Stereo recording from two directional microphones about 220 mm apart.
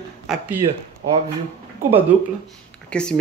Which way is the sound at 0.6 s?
25° right (ahead or behind).